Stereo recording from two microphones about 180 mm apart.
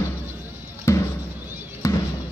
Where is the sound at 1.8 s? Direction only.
15° left (ahead or behind).